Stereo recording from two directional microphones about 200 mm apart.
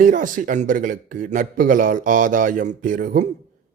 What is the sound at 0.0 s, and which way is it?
A man's voice, 40° right (ahead or behind).